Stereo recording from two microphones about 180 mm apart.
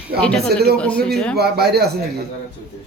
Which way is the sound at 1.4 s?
60° right (ahead or behind).